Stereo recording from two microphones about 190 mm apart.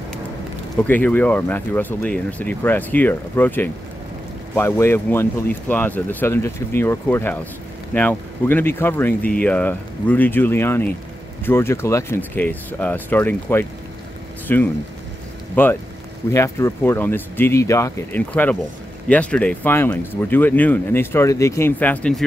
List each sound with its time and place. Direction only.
0.8 s speech: 10° left (ahead or behind)